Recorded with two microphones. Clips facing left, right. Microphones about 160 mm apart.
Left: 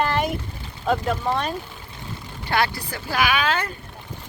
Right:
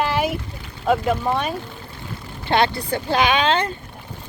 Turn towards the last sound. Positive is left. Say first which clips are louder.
# right 4 dB
turn(degrees=-25)  # may be behind; listen again after turning